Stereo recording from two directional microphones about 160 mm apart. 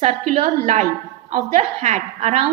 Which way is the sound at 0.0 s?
45° right (ahead or behind).